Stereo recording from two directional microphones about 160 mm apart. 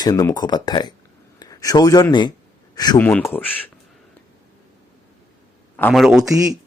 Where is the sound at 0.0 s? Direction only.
25° left (ahead or behind).